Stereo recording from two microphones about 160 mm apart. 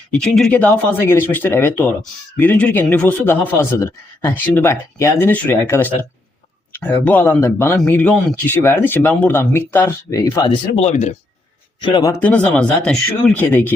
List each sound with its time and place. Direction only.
0.1 s speech: 5° left (ahead or behind); by 10.5 s 20° left (ahead or behind)
10.8 s speech: 45° left (ahead or behind)
11.8 s speech: 30° left (ahead or behind)
12.2 s speech: 5° left (ahead or behind)